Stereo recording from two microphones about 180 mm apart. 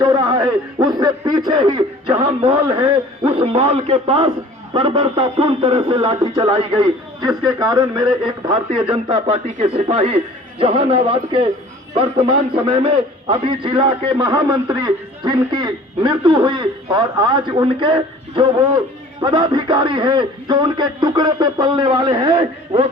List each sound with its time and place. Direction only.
0.0 s a man's voice: 20° right (ahead or behind)